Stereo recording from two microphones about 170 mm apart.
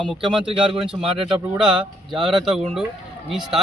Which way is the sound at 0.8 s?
5° right (ahead or behind).